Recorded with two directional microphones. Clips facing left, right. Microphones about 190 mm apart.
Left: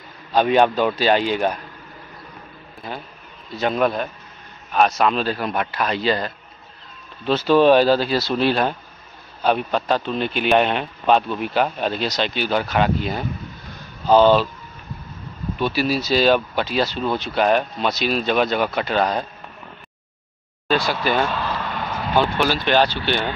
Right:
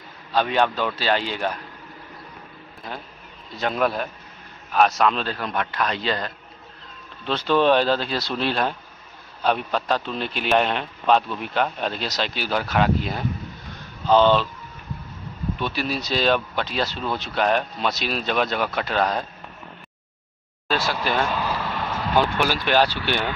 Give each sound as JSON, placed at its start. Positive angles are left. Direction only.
{"t": 0.3, "sound": "a man's voice", "side_deg": 15}
{"t": 2.9, "sound": "a man's voice", "side_deg": 0}
{"t": 15.6, "sound": "a man's voice", "side_deg": 5}
{"t": 20.6, "sound": "a man's voice", "side_deg": 0}
{"t": 21.3, "sound": "vehicle", "side_deg": -10}
{"t": 22.2, "sound": "speech", "side_deg": -10}